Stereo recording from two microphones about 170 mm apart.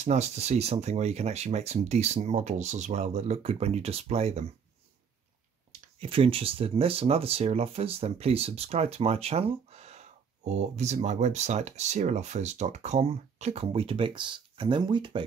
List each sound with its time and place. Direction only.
0.0 s speech: 40° right (ahead or behind)
5.7 s speech: 35° right (ahead or behind)